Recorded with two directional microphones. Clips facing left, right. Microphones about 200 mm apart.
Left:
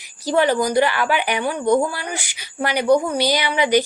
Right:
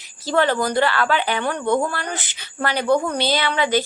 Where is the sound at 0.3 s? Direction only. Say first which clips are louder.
Left 2 dB; 15° left (ahead or behind).